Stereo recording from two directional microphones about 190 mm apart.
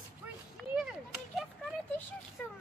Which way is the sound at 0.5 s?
5° right (ahead or behind).